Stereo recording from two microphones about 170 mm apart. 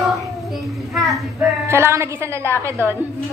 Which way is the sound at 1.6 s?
15° right (ahead or behind).